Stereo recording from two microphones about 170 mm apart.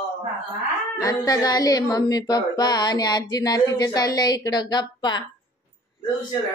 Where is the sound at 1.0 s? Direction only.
20° left (ahead or behind).